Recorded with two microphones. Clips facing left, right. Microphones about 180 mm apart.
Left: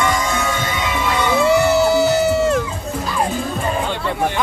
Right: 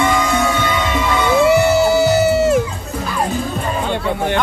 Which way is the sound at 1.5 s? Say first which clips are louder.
Left 1 dB; 5° right (ahead or behind).